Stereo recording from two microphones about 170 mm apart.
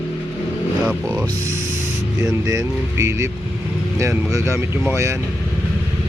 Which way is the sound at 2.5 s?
20° right (ahead or behind).